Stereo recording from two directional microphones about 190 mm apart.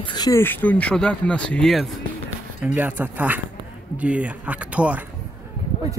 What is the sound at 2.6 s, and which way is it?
A man's voice, 10° right (ahead or behind).